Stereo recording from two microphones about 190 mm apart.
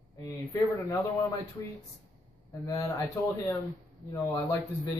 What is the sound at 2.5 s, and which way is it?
Speech, 15° left (ahead or behind).